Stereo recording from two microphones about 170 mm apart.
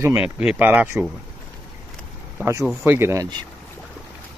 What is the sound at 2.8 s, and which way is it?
Speech, 15° right (ahead or behind).